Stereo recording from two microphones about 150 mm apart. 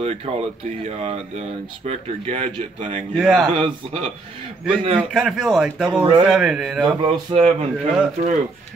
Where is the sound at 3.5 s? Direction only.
40° right (ahead or behind).